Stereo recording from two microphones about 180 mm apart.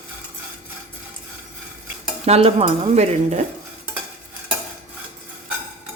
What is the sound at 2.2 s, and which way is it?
A man's voice, 35° right (ahead or behind).